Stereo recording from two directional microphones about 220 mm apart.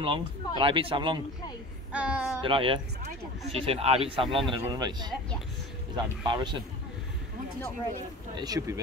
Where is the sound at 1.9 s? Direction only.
5° right (ahead or behind).